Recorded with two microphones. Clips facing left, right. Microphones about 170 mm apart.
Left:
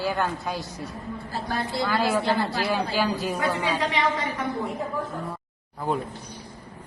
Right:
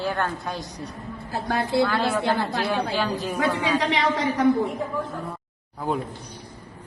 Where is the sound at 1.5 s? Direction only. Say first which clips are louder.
Right 7 dB; 65° right (ahead or behind).